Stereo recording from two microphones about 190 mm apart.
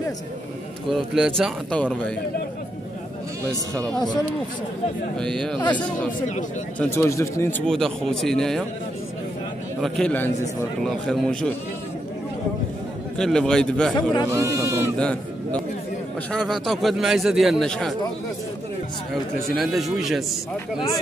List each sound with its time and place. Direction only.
0.9 s a man's voice: 5° right (ahead or behind)
5.1 s a man's voice: 5° left (ahead or behind)
6.8 s speech: 15° left (ahead or behind)
7.6 s a man's voice: 5° left (ahead or behind)
9.8 s a man's voice: centre (ahead or behind)
13.2 s a man's voice: 5° left (ahead or behind)
14.3 s speech: 15° right (ahead or behind)
15.0 s a man's voice: 5° left (ahead or behind)
19.5 s a man's voice: centre (ahead or behind)